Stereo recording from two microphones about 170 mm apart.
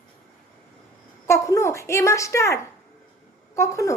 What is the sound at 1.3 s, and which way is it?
Speech, 15° left (ahead or behind).